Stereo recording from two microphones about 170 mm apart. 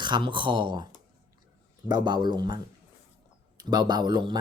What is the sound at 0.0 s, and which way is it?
Speech, 30° right (ahead or behind).